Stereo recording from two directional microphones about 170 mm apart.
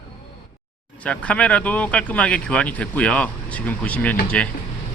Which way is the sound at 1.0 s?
5° left (ahead or behind).